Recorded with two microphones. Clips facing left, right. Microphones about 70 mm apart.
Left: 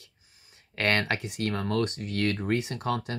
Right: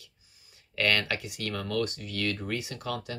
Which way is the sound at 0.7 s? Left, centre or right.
Left.